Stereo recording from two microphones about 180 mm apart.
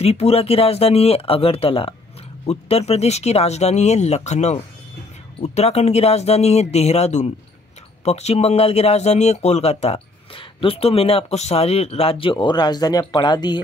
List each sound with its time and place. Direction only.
0.0 s speech: 35° left (ahead or behind)